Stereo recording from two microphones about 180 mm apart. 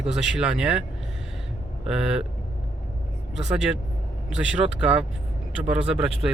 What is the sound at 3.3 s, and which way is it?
Speech, 5° right (ahead or behind).